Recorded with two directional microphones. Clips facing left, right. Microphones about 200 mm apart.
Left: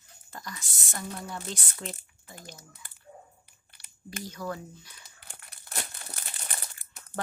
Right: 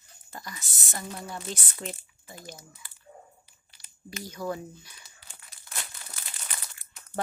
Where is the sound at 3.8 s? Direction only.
70° left (ahead or behind).